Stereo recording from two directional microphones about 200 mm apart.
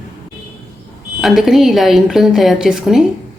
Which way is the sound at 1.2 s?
Centre (ahead or behind).